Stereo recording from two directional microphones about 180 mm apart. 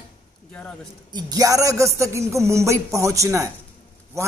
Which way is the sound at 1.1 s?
20° right (ahead or behind).